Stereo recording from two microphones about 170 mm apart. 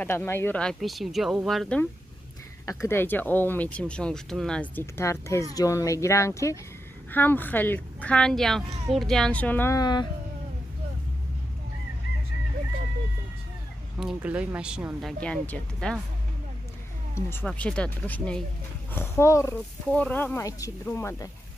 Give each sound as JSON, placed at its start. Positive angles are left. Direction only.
{"t": 0.0, "sound": "speech", "side_deg": 10}
{"t": 2.6, "sound": "speech", "side_deg": 20}
{"t": 13.9, "sound": "speech", "side_deg": -5}
{"t": 17.1, "sound": "speech", "side_deg": 15}